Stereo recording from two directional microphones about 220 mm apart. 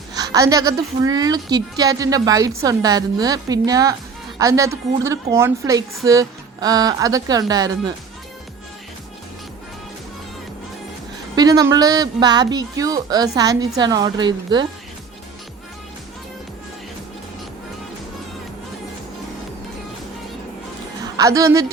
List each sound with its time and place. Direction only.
0.1 s a woman's voice: 15° right (ahead or behind)
11.3 s a woman's voice: 15° right (ahead or behind)
21.0 s a woman's voice: 15° right (ahead or behind)